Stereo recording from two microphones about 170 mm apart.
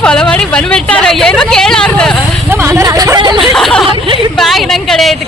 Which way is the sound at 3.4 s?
Centre (ahead or behind).